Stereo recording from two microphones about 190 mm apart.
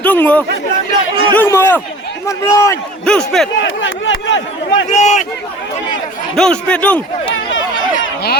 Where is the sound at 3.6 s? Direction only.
85° left.